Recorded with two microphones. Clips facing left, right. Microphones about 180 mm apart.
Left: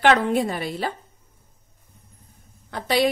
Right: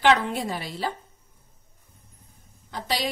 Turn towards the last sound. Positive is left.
turn(degrees=55)  # may be behind; listen again after turning